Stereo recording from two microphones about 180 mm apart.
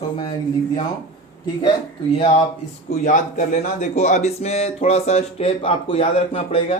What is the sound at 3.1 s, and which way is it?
Speech, 45° left (ahead or behind).